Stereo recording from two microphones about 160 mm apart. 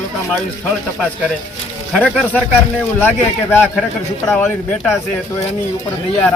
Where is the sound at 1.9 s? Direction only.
5° left (ahead or behind).